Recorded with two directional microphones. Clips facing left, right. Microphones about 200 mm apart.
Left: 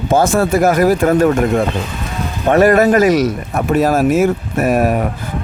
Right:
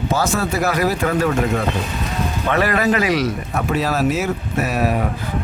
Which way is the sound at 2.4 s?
45° left (ahead or behind).